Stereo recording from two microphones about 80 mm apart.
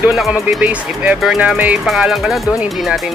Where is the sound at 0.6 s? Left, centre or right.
Centre.